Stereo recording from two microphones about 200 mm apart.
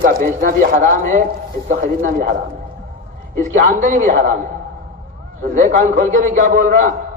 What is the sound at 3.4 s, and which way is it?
Speech, 40° right (ahead or behind).